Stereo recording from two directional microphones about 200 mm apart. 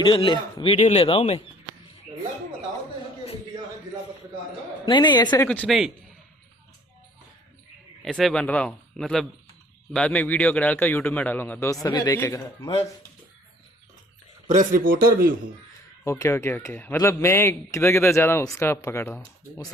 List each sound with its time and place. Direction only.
0.1 s a man's voice: 25° left (ahead or behind)
4.9 s a man's voice: 20° left (ahead or behind)
5.5 s speech: 5° left (ahead or behind)
8.0 s speech: centre (ahead or behind)
14.4 s a man's voice: 40° right (ahead or behind)
16.0 s speech: 15° left (ahead or behind)